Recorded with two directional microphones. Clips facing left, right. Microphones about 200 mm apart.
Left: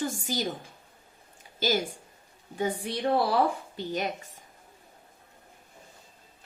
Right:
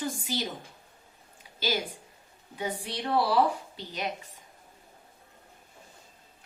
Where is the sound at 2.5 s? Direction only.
50° left (ahead or behind).